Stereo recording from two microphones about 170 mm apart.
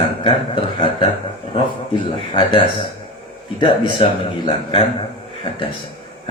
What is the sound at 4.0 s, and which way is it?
Speech, 30° left (ahead or behind).